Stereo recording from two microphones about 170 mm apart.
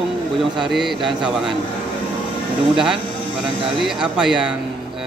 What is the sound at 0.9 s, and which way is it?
Speech, 30° right (ahead or behind).